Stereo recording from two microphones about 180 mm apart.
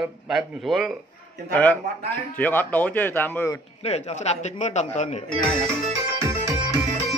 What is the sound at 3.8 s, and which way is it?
A man's voice, 35° left (ahead or behind).